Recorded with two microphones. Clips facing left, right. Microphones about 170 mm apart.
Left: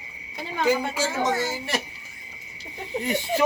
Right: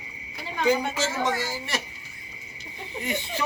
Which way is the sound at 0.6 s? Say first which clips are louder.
Even; 10° left (ahead or behind).